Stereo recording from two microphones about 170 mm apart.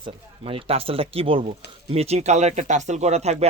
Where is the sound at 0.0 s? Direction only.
35° right (ahead or behind).